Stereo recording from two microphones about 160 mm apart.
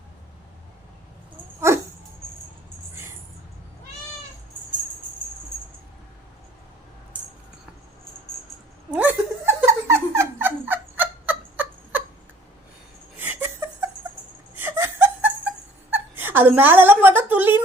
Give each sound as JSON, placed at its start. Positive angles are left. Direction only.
{"t": 1.7, "sound": "dog", "side_deg": -15}
{"t": 8.9, "sound": "giggle", "side_deg": -10}
{"t": 13.1, "sound": "a sound", "side_deg": -15}
{"t": 14.5, "sound": "laughter", "side_deg": -15}
{"t": 15.9, "sound": "a woman's voice", "side_deg": -10}